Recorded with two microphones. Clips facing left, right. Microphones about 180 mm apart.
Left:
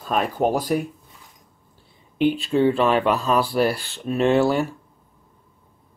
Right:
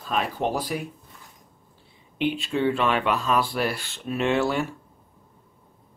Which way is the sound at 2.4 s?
35° left (ahead or behind).